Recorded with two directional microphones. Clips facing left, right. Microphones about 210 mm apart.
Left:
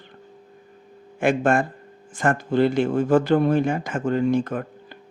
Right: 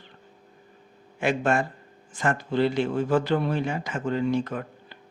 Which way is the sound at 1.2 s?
50° left (ahead or behind).